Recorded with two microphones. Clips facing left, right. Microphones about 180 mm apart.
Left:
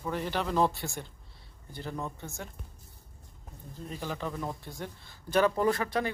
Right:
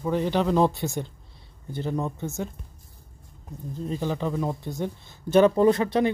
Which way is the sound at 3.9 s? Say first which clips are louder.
Right 8 dB; 20° right (ahead or behind).